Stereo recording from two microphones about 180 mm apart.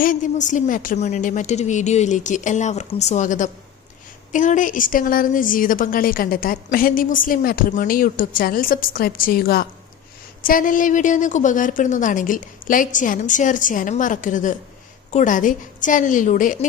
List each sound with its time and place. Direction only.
0.0 s a woman's voice: 45° left (ahead or behind)